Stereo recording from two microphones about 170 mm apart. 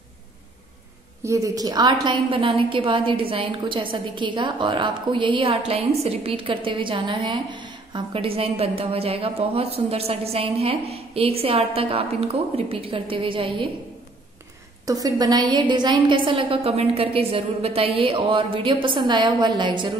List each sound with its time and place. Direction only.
1.2 s a woman's voice: 20° right (ahead or behind)
14.9 s a woman's voice: 20° right (ahead or behind)